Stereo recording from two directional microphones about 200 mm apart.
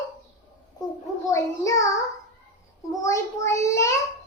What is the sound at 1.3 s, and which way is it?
Child singing, 15° left (ahead or behind).